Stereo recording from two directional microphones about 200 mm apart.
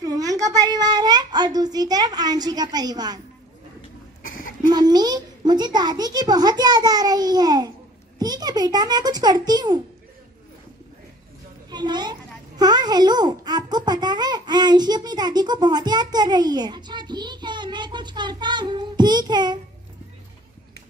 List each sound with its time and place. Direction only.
0.0 s a child's voice: 20° right (ahead or behind)
4.6 s a child's voice: 20° right (ahead or behind)
11.7 s a child's voice: 20° right (ahead or behind)